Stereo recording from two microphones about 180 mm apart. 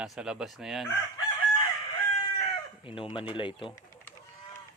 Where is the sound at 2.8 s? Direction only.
30° left (ahead or behind).